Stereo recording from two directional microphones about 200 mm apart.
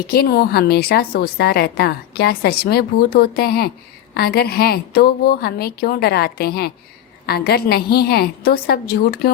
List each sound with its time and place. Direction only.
0.1 s a woman's voice: 50° left (ahead or behind)